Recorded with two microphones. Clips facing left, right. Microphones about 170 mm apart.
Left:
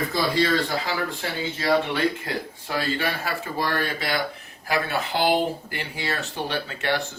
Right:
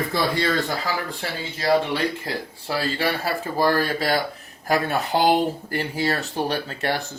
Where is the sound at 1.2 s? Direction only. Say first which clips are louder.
Left 1 dB; 35° right (ahead or behind).